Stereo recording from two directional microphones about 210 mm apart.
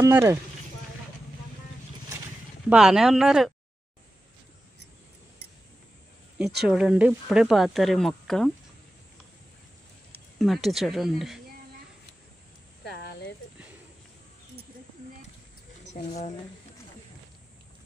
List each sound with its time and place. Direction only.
0.0 s speech: 10° right (ahead or behind)
2.7 s speech: 5° right (ahead or behind)
6.6 s speech: 5° right (ahead or behind)
10.1 s speech: centre (ahead or behind)
12.8 s a sound: 50° left (ahead or behind)
15.8 s speech: 30° left (ahead or behind)